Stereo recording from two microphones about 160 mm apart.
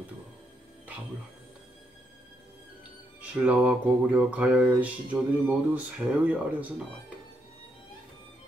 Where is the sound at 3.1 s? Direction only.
10° right (ahead or behind).